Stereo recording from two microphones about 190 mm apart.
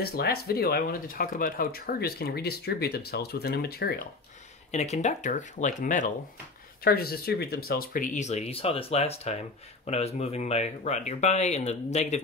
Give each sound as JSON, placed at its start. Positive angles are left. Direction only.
{"t": 0.0, "sound": "speech", "side_deg": 55}
{"t": 4.6, "sound": "speech", "side_deg": 35}
{"t": 6.8, "sound": "speech", "side_deg": 55}